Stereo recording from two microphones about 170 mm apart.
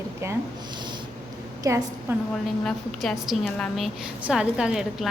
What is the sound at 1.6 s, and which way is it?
Speech, 20° right (ahead or behind).